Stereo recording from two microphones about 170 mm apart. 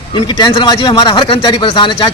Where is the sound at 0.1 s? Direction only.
25° left (ahead or behind).